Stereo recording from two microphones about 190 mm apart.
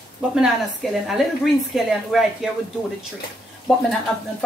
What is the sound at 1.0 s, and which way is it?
Speech, centre (ahead or behind).